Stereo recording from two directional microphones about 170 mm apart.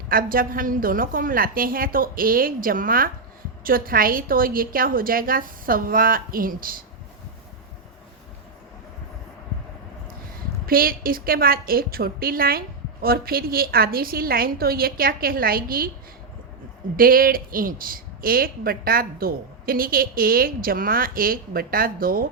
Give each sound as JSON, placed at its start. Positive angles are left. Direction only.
{"t": 0.1, "sound": "a woman's voice", "side_deg": -55}
{"t": 10.7, "sound": "a woman's voice", "side_deg": -60}
{"t": 17.0, "sound": "a woman's voice", "side_deg": -55}